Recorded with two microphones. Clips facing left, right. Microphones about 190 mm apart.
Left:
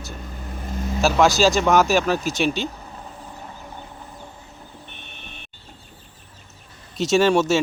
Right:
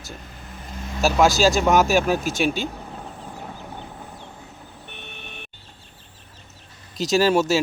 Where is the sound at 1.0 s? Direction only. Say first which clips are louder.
Even; 5° right (ahead or behind).